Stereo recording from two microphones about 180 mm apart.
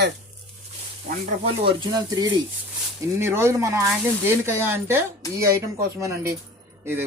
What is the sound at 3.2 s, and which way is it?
Speech, 15° right (ahead or behind).